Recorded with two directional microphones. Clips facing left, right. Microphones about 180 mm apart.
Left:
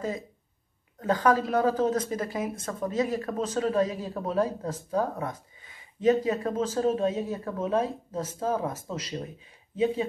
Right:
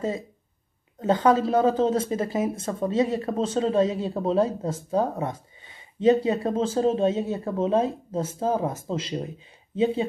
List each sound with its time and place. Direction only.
0.9 s speech: 25° right (ahead or behind)